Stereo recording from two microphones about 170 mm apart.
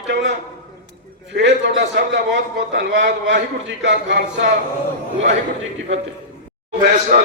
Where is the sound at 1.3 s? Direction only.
90° right.